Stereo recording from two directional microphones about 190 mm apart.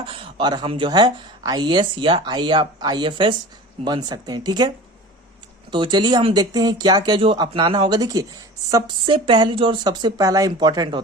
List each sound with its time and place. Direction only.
0.0 s speech: 25° right (ahead or behind)
5.7 s speech: 25° right (ahead or behind)